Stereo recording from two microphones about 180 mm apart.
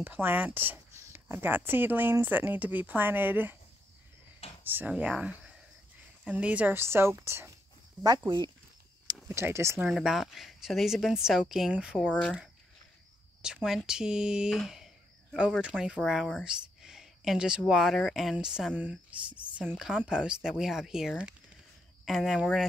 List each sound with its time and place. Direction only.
0.0 s speech: 10° right (ahead or behind)
4.6 s speech: 10° right (ahead or behind)
9.8 s speech: centre (ahead or behind)
12.1 s speech: 5° left (ahead or behind)
13.4 s speech: 5° right (ahead or behind)